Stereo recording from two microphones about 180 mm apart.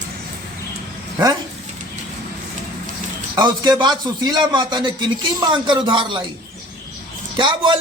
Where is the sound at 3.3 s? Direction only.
20° right (ahead or behind).